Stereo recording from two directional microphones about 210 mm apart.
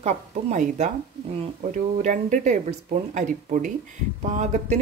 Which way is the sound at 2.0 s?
35° right (ahead or behind).